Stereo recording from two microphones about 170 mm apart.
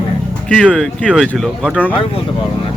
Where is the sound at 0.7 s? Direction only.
Centre (ahead or behind).